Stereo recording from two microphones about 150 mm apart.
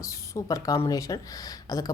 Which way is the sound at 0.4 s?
25° left (ahead or behind).